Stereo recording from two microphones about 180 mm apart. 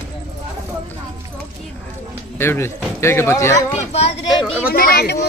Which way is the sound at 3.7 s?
35° left (ahead or behind).